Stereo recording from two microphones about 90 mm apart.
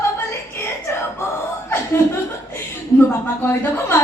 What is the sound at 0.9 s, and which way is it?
Music, 25° left (ahead or behind).